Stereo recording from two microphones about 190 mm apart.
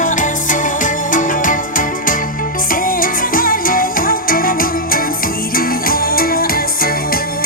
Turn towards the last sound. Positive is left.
turn(degrees=50)  # may be behind; listen again after turning